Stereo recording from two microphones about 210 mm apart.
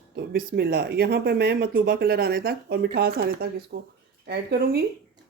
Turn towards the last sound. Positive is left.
turn(degrees=-50)  # may be behind; listen again after turning